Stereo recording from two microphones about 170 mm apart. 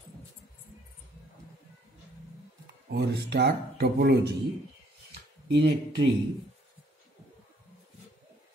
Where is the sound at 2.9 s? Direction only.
75° right (ahead or behind).